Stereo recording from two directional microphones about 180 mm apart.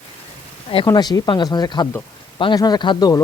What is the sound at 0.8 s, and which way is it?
Speech, 20° left (ahead or behind).